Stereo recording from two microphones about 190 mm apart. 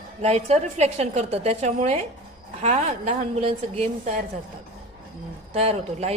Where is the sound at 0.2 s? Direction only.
35° right (ahead or behind).